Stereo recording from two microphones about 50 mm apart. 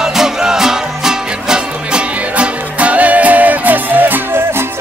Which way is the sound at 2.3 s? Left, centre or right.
Right.